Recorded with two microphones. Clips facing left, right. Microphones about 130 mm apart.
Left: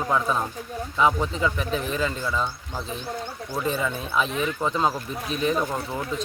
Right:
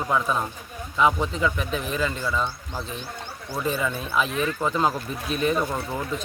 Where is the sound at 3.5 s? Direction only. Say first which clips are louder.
Even; 5° right (ahead or behind).